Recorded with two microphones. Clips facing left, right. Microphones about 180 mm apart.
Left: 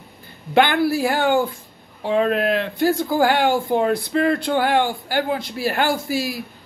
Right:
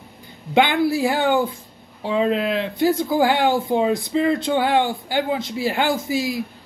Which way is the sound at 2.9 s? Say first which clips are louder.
Left 1 dB; 20° right (ahead or behind).